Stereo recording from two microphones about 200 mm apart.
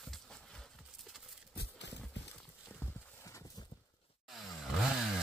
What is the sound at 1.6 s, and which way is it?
Clip-clop, 60° left (ahead or behind).